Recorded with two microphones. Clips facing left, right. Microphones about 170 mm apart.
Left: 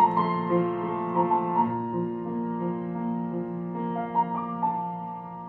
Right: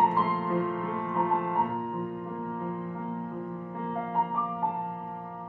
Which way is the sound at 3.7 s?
20° left (ahead or behind).